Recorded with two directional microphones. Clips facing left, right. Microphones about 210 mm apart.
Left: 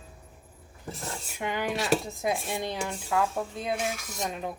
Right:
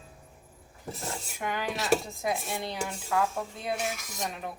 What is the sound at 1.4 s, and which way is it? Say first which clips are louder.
Speech: left 3 dB; 20° left (ahead or behind).